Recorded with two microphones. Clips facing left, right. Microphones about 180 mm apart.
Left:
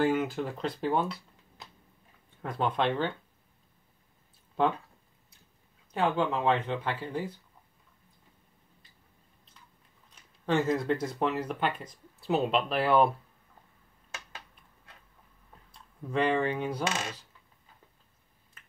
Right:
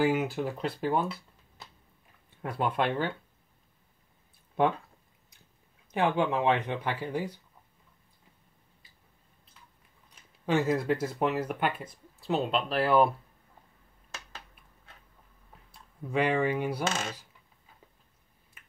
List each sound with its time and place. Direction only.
0.0 s speech: 10° right (ahead or behind)
2.4 s speech: 10° right (ahead or behind)
5.9 s speech: 15° right (ahead or behind)
10.4 s speech: 10° right (ahead or behind)
12.2 s speech: centre (ahead or behind)
15.7 s speech: 10° right (ahead or behind)